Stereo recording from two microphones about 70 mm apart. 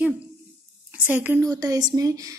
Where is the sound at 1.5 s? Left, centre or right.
Right.